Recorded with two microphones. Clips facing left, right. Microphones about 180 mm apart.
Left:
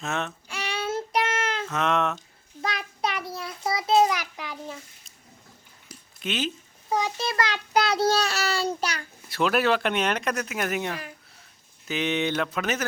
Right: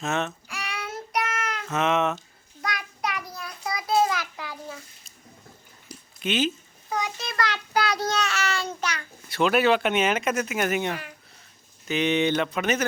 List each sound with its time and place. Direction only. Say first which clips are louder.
0.0 s speech: right 3 dB; centre (ahead or behind)
0.4 s child singing: left 5 dB; 30° left (ahead or behind)
1.7 s speech: right 3 dB; centre (ahead or behind)
2.6 s child singing: left 2 dB; 30° left (ahead or behind)
6.2 s speech: right 4 dB; centre (ahead or behind)
7.0 s a child's voice: even; 25° left (ahead or behind)
9.3 s speech: right 2 dB; centre (ahead or behind)